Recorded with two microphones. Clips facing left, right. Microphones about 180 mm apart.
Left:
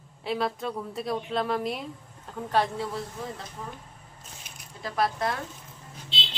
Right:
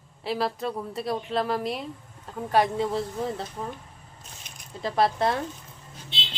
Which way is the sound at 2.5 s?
15° right (ahead or behind).